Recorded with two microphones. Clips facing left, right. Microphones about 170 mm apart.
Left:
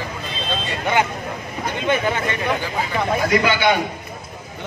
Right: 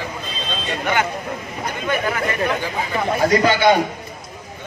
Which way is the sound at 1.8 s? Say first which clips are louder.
Left 1 dB; 25° left (ahead or behind).